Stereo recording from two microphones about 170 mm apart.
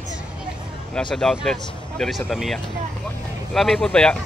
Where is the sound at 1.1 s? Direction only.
5° left (ahead or behind).